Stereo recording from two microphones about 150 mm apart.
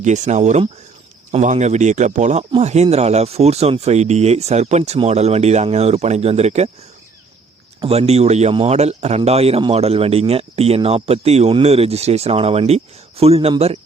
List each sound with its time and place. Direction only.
0.0 s speech: 50° right (ahead or behind)
7.8 s speech: 45° right (ahead or behind)